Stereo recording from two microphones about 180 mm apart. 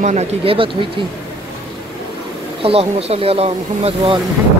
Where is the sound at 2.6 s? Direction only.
35° right (ahead or behind).